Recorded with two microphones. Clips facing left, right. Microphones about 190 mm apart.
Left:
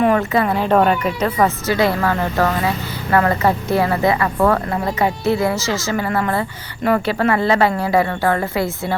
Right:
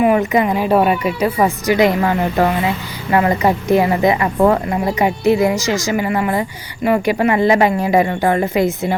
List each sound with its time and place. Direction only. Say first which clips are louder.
0.0 s speech: right 2 dB; 15° right (ahead or behind)